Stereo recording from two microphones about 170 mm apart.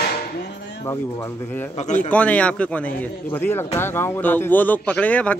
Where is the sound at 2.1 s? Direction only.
10° left (ahead or behind).